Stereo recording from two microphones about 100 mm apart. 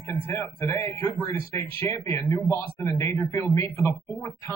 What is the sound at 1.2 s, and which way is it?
A man's voice, 25° left (ahead or behind).